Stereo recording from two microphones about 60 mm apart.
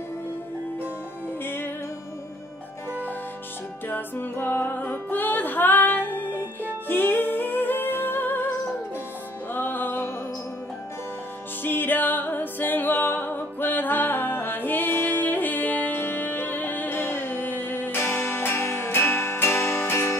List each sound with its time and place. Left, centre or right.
1.4 s music: left
3.9 s music: left
6.3 s music: right
6.9 s music: left
9.5 s music: left
11.6 s music: left